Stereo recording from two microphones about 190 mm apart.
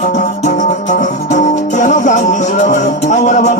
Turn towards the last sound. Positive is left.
turn(degrees=40)  # may be behind; listen again after turning